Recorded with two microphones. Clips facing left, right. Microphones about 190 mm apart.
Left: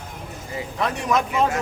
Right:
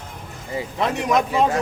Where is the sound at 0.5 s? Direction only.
20° right (ahead or behind).